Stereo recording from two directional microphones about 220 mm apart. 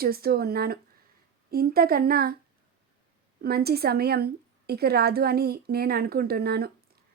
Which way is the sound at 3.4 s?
45° right (ahead or behind).